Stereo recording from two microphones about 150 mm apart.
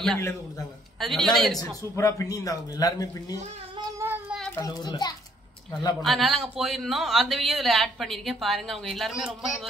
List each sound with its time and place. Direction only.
0.2 s speech: 20° left (ahead or behind)
0.9 s speech: centre (ahead or behind)
1.8 s speech: 20° left (ahead or behind)
4.0 s child singing: 15° right (ahead or behind)
4.5 s speech: 25° left (ahead or behind)
6.0 s speech: centre (ahead or behind)